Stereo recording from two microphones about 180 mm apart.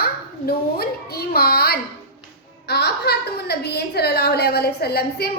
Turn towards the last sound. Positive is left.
turn(degrees=60)  # may be behind; listen again after turning